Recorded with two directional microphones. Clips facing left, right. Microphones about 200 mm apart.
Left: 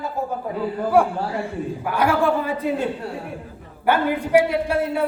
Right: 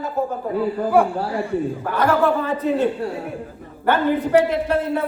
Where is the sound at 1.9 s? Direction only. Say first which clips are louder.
Right 1 dB; 10° left (ahead or behind).